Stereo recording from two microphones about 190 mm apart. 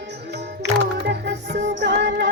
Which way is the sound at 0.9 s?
60° right (ahead or behind).